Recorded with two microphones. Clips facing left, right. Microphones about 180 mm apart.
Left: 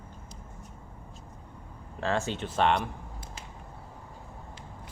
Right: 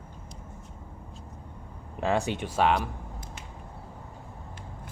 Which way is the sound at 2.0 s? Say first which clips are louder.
Right 3 dB; 15° right (ahead or behind).